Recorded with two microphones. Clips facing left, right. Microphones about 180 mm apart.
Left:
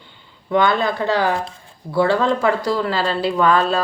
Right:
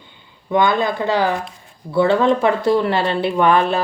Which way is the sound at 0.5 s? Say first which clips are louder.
Right 1 dB; 20° right (ahead or behind).